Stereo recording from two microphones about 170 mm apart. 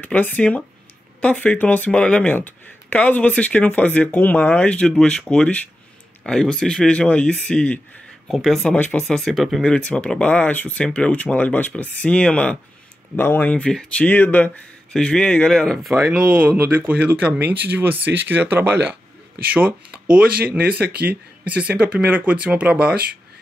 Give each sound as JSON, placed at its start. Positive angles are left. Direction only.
{"t": 0.0, "sound": "speech", "side_deg": 10}
{"t": 16.3, "sound": "speech", "side_deg": -10}
{"t": 20.4, "sound": "speech", "side_deg": -65}
{"t": 21.1, "sound": "speech", "side_deg": -10}